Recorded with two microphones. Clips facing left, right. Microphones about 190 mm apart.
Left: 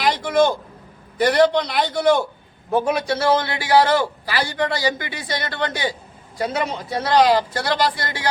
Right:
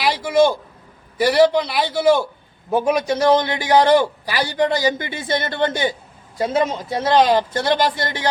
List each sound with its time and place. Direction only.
0.0 s a man's voice: 5° right (ahead or behind); by 8.3 s 20° right (ahead or behind)